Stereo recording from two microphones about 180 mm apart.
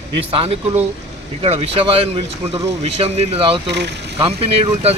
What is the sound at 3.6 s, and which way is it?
Speech, 75° right (ahead or behind).